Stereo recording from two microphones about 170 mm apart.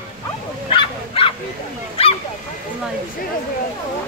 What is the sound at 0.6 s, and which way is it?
Dog, 30° left (ahead or behind).